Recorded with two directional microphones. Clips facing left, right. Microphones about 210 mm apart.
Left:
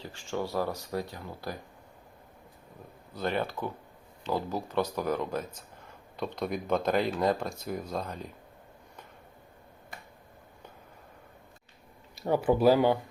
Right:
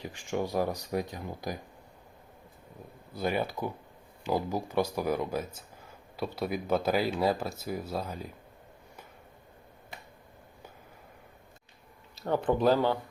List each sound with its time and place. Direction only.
0.0 s speech: 15° right (ahead or behind)
3.1 s speech: 10° right (ahead or behind)
12.1 s speech: 10° left (ahead or behind)